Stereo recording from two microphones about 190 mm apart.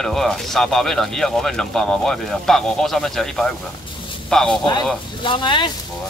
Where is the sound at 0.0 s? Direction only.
Centre (ahead or behind).